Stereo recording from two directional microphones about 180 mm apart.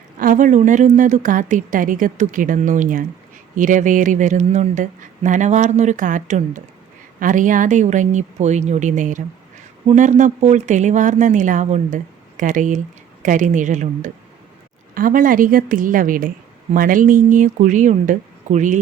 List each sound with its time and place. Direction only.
0.2 s speech: 45° right (ahead or behind)